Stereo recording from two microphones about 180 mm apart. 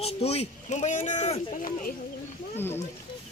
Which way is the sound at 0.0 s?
35° left (ahead or behind).